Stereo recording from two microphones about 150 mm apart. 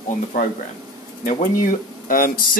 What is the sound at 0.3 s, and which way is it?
Speech, 60° left (ahead or behind).